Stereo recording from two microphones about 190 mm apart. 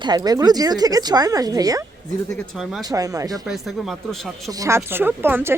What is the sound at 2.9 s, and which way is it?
Speech, 20° right (ahead or behind).